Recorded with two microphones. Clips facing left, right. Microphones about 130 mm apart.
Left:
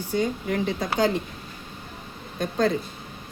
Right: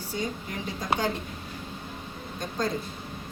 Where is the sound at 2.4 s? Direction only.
65° left (ahead or behind).